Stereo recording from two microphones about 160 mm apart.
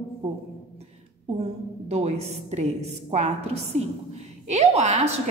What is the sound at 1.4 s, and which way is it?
A woman's voice, 40° right (ahead or behind).